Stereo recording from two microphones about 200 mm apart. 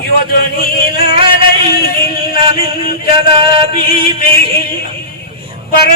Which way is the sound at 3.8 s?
45° left (ahead or behind).